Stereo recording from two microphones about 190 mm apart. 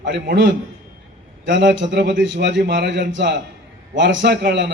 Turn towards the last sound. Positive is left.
turn(degrees=-65)  # may be behind; listen again after turning